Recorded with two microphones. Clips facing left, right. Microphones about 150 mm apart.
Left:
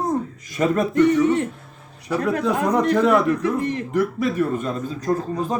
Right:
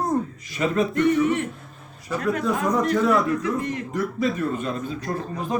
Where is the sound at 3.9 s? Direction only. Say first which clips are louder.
Left 4 dB; 60° left (ahead or behind); by 5.6 s 35° left (ahead or behind).